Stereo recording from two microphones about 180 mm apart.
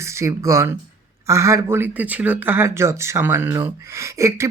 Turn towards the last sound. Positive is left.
turn(degrees=-15)  # may be behind; listen again after turning